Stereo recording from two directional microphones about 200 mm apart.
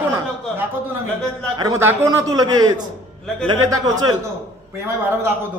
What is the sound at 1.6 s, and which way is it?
A man's voice, 15° right (ahead or behind).